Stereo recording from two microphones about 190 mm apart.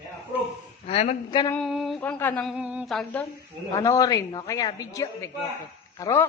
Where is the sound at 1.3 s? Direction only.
25° left (ahead or behind).